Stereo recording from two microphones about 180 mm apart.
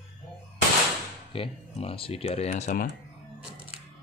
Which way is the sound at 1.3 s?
30° left (ahead or behind).